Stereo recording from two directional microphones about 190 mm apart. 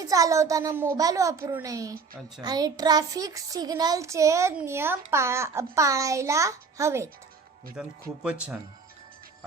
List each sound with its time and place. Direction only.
0.0 s speech: 20° right (ahead or behind)
7.8 s speech: 5° right (ahead or behind)